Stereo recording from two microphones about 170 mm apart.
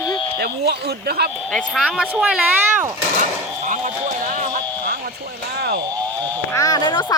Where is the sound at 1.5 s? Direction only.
5° right (ahead or behind).